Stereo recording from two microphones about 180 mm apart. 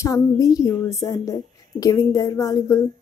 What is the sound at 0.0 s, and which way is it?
A woman's voice, 20° left (ahead or behind).